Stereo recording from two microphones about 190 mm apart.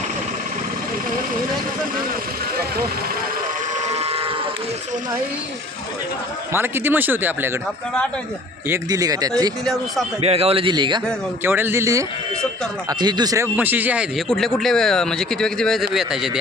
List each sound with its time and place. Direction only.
3.8 s steam whistle: 35° right (ahead or behind)
6.5 s speech: 10° right (ahead or behind)
8.7 s a man's voice: 20° right (ahead or behind)
10.2 s a man's voice: 30° right (ahead or behind)
11.4 s speech: 10° right (ahead or behind)